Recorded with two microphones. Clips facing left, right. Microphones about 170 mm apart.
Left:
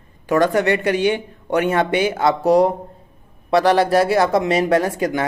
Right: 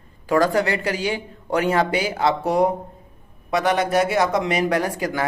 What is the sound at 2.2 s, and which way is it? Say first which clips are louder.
Speech: left 4 dB; 20° right (ahead or behind).